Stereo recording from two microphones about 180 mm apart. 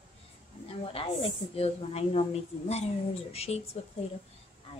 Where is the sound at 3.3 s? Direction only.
35° left (ahead or behind).